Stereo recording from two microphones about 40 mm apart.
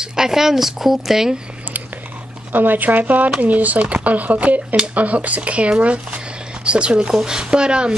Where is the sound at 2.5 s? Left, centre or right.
Right.